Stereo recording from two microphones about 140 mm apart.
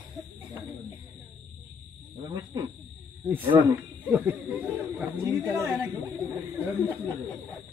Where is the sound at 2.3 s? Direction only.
25° right (ahead or behind).